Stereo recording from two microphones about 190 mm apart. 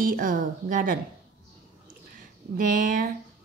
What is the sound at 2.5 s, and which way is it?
Speech, 45° right (ahead or behind).